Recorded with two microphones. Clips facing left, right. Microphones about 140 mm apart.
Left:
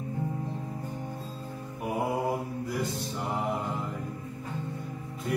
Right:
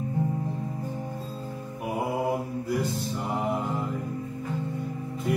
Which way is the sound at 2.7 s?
Centre (ahead or behind).